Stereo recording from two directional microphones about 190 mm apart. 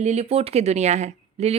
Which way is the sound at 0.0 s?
35° right (ahead or behind).